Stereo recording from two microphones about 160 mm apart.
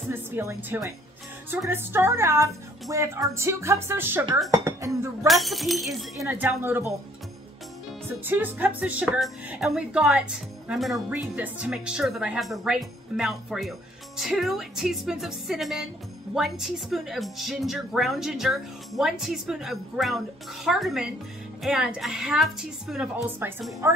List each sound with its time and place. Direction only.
0.1 s a woman's voice: 15° right (ahead or behind)
5.2 s speech: centre (ahead or behind)
6.2 s a woman's voice: 10° right (ahead or behind)
8.1 s speech: 10° right (ahead or behind)
23.4 s a woman's voice: 15° right (ahead or behind)